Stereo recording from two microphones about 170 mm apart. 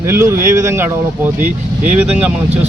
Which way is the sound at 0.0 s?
15° right (ahead or behind).